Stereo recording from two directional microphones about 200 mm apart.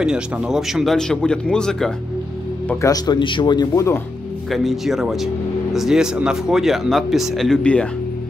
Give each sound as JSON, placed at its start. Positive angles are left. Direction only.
{"t": 0.0, "sound": "speech", "side_deg": -5}
{"t": 2.7, "sound": "speech", "side_deg": 15}
{"t": 4.5, "sound": "speech", "side_deg": 0}